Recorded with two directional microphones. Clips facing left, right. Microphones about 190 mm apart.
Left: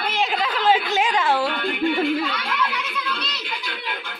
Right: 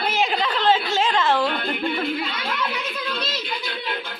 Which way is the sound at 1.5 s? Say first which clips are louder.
Left 3 dB; 40° right (ahead or behind).